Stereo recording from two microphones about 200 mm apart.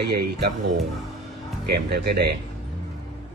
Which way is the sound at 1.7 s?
55° right (ahead or behind).